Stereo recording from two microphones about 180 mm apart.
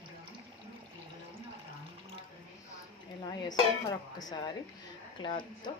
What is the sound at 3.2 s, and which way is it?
Speech, 20° left (ahead or behind).